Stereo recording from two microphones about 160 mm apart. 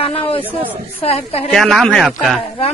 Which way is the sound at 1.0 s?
40° left (ahead or behind).